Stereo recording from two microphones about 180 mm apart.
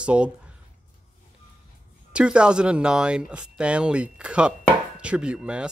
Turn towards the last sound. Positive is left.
turn(degrees=-5)  # may be behind; listen again after turning